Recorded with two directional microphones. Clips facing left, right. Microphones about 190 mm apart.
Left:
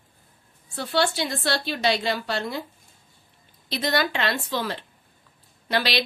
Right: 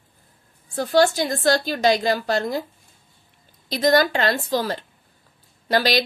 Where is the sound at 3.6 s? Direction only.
40° right (ahead or behind).